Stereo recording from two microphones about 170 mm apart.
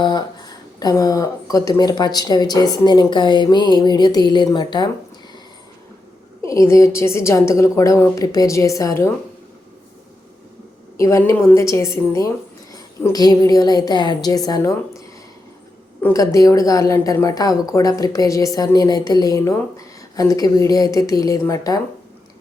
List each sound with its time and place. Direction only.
0.0 s speech: 25° left (ahead or behind)
6.4 s a woman's voice: 20° left (ahead or behind)
10.9 s a woman's voice: 20° left (ahead or behind)